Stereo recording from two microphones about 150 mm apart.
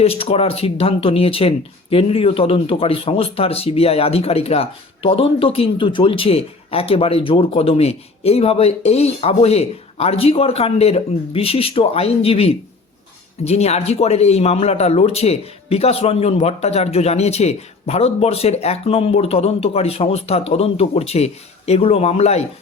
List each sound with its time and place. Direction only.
0.0 s speech: 40° left (ahead or behind)